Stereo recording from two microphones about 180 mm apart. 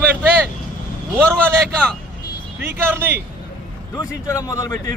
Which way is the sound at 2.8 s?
10° right (ahead or behind).